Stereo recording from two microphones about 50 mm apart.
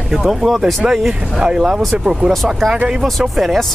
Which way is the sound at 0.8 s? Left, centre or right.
Centre.